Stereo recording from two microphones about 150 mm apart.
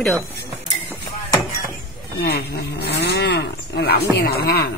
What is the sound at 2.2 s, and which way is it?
Livestock, 90° left.